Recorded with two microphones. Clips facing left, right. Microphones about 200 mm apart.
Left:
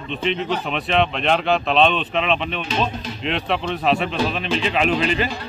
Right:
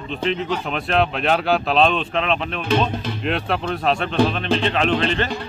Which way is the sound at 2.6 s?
55° right (ahead or behind).